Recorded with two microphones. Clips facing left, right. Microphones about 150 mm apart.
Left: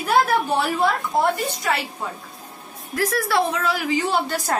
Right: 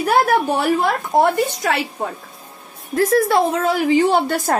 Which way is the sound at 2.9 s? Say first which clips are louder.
Right 7 dB; 25° right (ahead or behind).